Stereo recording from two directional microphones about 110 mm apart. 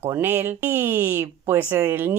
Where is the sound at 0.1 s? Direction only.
20° right (ahead or behind).